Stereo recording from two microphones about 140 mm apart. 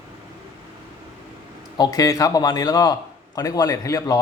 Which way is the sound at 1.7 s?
25° left (ahead or behind).